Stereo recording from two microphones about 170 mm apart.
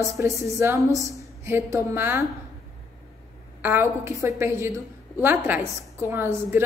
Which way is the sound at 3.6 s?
15° right (ahead or behind).